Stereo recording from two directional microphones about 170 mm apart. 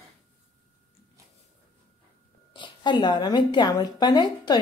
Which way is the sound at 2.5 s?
25° left (ahead or behind).